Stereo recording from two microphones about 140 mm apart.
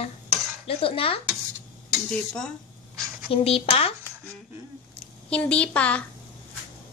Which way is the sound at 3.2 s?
45° left (ahead or behind).